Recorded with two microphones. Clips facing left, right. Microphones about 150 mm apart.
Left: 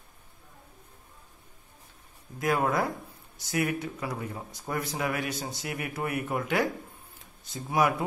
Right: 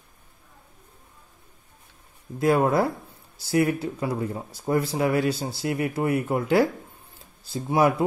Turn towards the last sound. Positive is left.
turn(degrees=-30)  # may be behind; listen again after turning